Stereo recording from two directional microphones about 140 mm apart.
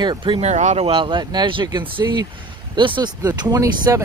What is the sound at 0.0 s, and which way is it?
Speech, 35° right (ahead or behind).